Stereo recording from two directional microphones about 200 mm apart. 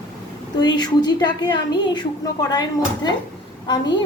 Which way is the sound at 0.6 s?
20° left (ahead or behind).